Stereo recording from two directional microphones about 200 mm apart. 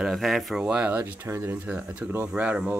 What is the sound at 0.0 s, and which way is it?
Speech, centre (ahead or behind).